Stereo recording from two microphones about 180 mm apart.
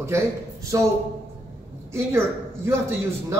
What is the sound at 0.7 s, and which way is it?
Speech, 20° right (ahead or behind).